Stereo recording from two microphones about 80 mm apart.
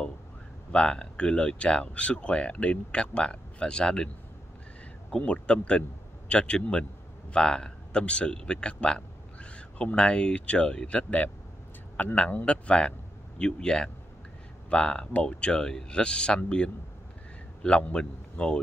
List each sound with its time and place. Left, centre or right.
0.7 s speech: centre
5.1 s speech: centre